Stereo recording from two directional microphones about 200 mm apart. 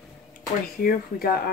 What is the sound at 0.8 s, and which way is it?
Speech, 45° left (ahead or behind).